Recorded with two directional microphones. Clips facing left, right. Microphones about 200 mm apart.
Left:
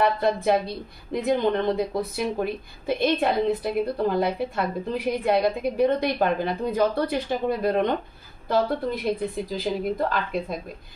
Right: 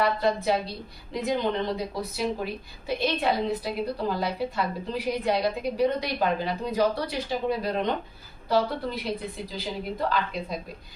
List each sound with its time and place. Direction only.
0.0 s a woman's voice: 55° left (ahead or behind)